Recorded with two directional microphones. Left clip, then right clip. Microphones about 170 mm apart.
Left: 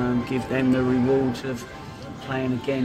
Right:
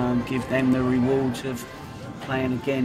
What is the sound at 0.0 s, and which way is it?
Speech, 5° right (ahead or behind).